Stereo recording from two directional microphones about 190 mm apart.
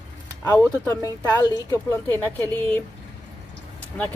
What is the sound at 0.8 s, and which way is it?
Speech, 20° left (ahead or behind).